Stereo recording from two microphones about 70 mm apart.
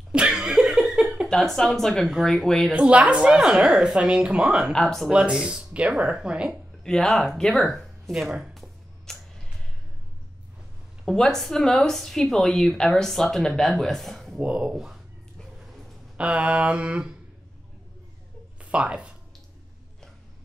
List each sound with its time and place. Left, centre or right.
0.1 s laughter: centre
0.4 s laughter: centre
1.3 s speech: centre
2.7 s speech: centre
4.7 s speech: centre
5.1 s speech: centre
6.8 s speech: centre
9.1 s a sound: centre
11.1 s speech: centre
14.4 s speech: centre
16.2 s speech: centre
18.6 s speech: centre